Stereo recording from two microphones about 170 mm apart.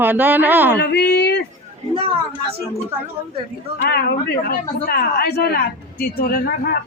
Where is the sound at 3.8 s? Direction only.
70° left (ahead or behind).